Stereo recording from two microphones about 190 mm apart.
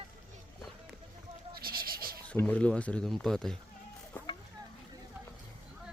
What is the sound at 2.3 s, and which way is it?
Speech, 5° left (ahead or behind).